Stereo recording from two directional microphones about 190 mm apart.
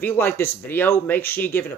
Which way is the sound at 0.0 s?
10° left (ahead or behind).